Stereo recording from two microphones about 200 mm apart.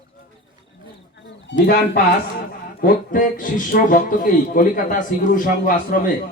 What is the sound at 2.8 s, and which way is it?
A man's voice, 45° left (ahead or behind).